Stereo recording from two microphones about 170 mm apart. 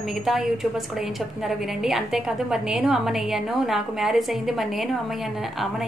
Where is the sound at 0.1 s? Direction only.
Centre (ahead or behind).